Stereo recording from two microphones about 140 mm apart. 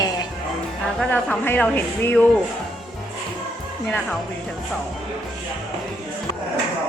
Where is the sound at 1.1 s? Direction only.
10° left (ahead or behind).